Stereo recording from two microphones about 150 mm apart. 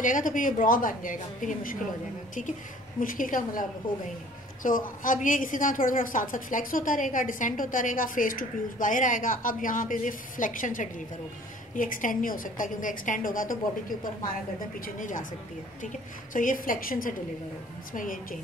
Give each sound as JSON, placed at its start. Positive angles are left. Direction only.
{"t": 0.0, "sound": "a woman's voice", "side_deg": 60}
{"t": 3.0, "sound": "a woman's voice", "side_deg": 65}
{"t": 15.0, "sound": "a woman's voice", "side_deg": 60}
{"t": 16.3, "sound": "a woman's voice", "side_deg": 65}